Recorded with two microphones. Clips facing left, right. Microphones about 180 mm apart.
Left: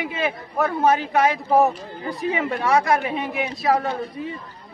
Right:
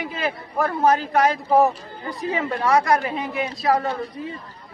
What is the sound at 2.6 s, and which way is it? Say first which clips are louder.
Speech: right 1 dB; 5° left (ahead or behind).